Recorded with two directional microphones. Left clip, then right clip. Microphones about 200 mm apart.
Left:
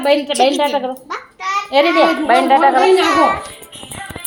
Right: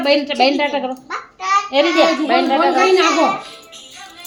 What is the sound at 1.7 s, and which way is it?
Speech, 10° left (ahead or behind).